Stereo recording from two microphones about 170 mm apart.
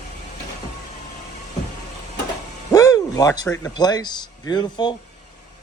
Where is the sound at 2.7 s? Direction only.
20° left (ahead or behind).